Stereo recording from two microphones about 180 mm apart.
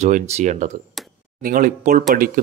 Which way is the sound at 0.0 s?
40° right (ahead or behind).